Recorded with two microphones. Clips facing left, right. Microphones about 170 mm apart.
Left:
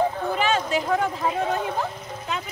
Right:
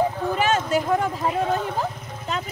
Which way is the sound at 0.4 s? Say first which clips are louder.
Right 2 dB; 45° right (ahead or behind).